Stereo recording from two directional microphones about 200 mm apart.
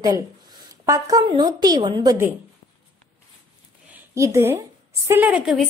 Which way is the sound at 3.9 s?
15° right (ahead or behind).